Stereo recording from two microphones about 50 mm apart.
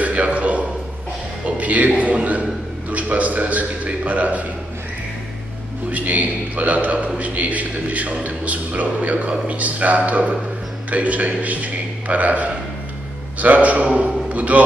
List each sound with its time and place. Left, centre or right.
0.0 s a sound: right
2.9 s a man's voice: right
5.9 s a man's voice: right